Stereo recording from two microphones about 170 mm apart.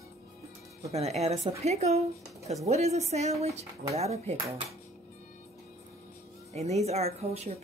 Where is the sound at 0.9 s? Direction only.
40° right (ahead or behind).